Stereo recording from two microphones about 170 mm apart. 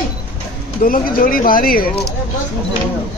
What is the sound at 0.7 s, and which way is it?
Speech, 55° left (ahead or behind).